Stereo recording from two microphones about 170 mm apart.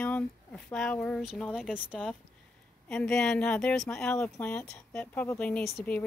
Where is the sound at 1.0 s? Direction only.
Centre (ahead or behind).